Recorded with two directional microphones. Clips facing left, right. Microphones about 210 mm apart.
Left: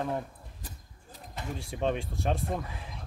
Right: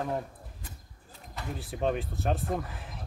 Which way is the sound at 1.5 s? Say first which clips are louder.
Right 1 dB; 5° right (ahead or behind).